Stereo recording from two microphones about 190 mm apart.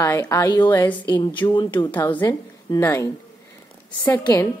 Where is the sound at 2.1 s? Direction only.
25° left (ahead or behind).